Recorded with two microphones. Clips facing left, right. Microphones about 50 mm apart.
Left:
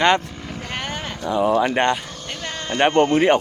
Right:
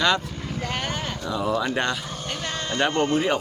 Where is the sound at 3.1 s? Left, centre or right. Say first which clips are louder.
Left 6 dB; left.